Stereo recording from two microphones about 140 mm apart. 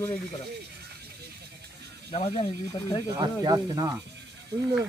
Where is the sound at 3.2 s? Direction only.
30° right (ahead or behind).